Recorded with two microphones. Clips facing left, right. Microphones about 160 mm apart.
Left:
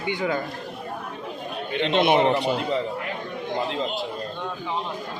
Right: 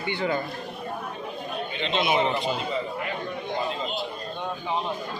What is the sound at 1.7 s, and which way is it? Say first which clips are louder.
Speech: left 6 dB; 60° left (ahead or behind).